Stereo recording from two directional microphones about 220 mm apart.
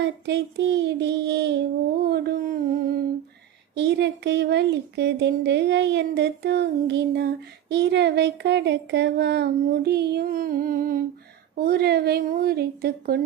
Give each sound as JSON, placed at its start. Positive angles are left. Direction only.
{"t": 0.0, "sound": "speech", "side_deg": -50}
{"t": 2.0, "sound": "a sound", "side_deg": -45}
{"t": 3.8, "sound": "speech", "side_deg": -50}